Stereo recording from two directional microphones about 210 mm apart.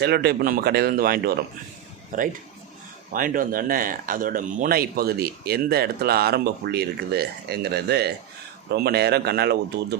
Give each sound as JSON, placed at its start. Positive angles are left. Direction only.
{"t": 0.0, "sound": "speech", "side_deg": -50}